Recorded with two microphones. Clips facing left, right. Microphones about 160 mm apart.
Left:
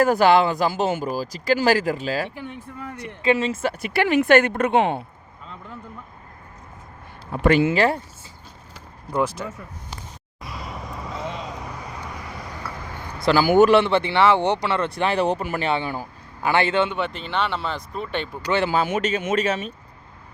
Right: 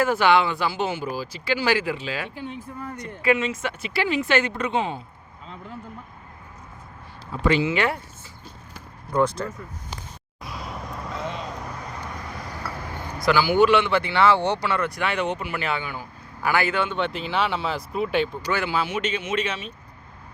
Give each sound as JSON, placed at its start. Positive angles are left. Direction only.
{"t": 0.0, "sound": "speech", "side_deg": 40}
{"t": 2.3, "sound": "speech", "side_deg": 55}
{"t": 3.2, "sound": "speech", "side_deg": 30}
{"t": 3.8, "sound": "speech", "side_deg": 55}
{"t": 7.4, "sound": "speech", "side_deg": 55}
{"t": 7.7, "sound": "speech", "side_deg": 35}
{"t": 9.1, "sound": "speech", "side_deg": 5}
{"t": 10.4, "sound": "vehicle", "side_deg": 0}
{"t": 13.1, "sound": "a sound", "side_deg": 30}
{"t": 13.4, "sound": "speech", "side_deg": 45}
{"t": 14.0, "sound": "speech", "side_deg": 20}
{"t": 17.0, "sound": "speech", "side_deg": -5}
{"t": 18.6, "sound": "speech", "side_deg": 40}